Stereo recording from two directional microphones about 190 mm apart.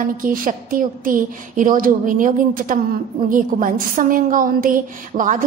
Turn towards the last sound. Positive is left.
turn(degrees=-45)  # may be behind; listen again after turning